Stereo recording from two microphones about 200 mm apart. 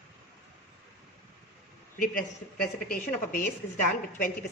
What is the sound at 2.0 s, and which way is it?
A woman's voice, 45° left (ahead or behind).